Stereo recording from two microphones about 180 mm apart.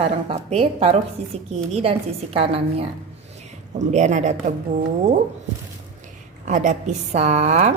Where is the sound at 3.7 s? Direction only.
40° right (ahead or behind).